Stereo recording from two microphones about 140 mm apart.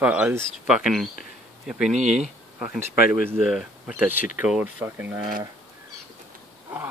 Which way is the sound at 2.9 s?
90° left.